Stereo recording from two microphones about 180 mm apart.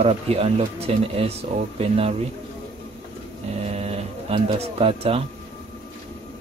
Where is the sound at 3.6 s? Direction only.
35° right (ahead or behind).